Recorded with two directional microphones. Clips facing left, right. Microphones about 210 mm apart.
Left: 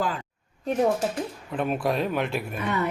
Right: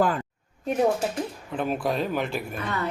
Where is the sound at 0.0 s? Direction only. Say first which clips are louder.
Right 5 dB; 50° right (ahead or behind).